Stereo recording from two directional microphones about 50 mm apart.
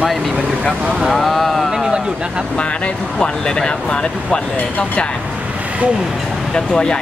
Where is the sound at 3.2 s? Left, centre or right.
Centre.